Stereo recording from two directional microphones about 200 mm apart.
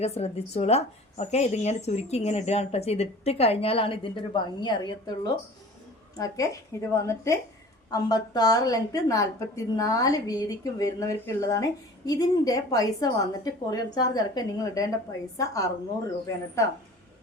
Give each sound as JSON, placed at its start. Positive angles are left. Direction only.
{"t": 0.0, "sound": "a woman's voice", "side_deg": 30}